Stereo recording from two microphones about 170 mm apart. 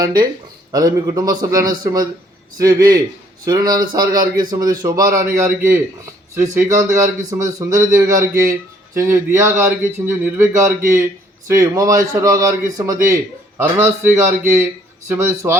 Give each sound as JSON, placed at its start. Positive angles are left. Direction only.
{"t": 0.0, "sound": "a man's voice", "side_deg": -25}